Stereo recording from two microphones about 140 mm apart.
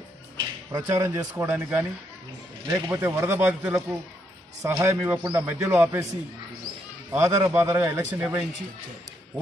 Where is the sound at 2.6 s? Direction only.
25° right (ahead or behind).